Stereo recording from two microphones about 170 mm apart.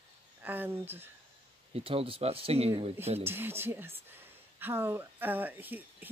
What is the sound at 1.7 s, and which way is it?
Speech, 35° right (ahead or behind).